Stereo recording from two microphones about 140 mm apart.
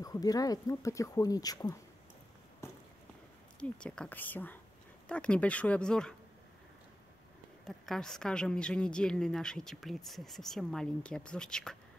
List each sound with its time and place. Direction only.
0.0 s speech: 25° left (ahead or behind)
2.6 s walk: 20° left (ahead or behind)
3.5 s speech: 5° left (ahead or behind)
7.6 s a woman's voice: centre (ahead or behind)